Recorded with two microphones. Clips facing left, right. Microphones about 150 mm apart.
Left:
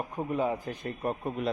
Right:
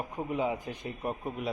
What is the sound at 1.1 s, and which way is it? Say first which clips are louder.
Speech: left 3 dB; 15° left (ahead or behind).